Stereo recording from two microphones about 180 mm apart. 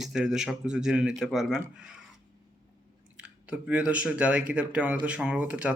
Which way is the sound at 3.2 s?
5° right (ahead or behind).